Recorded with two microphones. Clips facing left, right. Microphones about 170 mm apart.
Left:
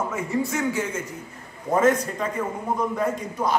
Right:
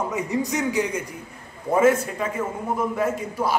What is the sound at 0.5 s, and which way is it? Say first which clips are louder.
A man's voice: right 2 dB; 15° right (ahead or behind).